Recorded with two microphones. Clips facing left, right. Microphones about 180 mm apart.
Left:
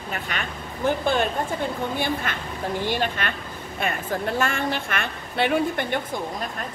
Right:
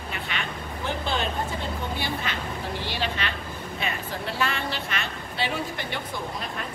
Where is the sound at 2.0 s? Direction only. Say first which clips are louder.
Left 4 dB; 50° left (ahead or behind).